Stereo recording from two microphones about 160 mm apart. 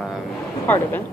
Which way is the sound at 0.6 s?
10° left (ahead or behind).